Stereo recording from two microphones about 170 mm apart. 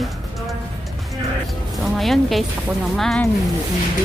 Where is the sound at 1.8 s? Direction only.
Centre (ahead or behind).